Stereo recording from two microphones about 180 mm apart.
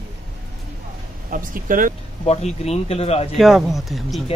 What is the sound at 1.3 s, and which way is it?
Speech, 50° right (ahead or behind).